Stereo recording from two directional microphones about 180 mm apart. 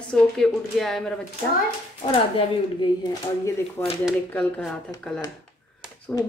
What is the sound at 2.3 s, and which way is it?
Speech, 25° left (ahead or behind).